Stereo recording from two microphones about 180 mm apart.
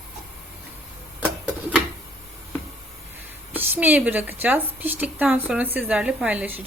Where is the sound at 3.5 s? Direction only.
10° right (ahead or behind).